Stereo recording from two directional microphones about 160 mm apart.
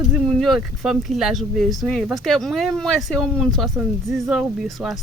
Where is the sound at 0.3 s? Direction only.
Centre (ahead or behind).